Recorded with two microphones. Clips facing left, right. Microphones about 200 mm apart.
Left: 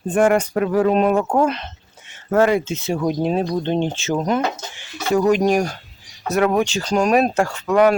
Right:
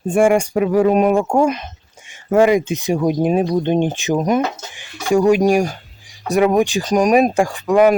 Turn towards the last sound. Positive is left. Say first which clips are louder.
# right 2 dB
turn(degrees=-15)  # may be behind; listen again after turning